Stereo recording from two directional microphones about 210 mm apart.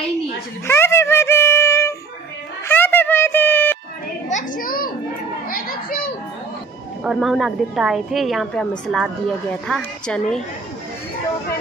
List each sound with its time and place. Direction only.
0.7 s music: 10° left (ahead or behind)
2.7 s a sound: 10° left (ahead or behind)
4.3 s children playing: 40° left (ahead or behind)
5.5 s music: 45° left (ahead or behind)
7.0 s a woman's voice: centre (ahead or behind)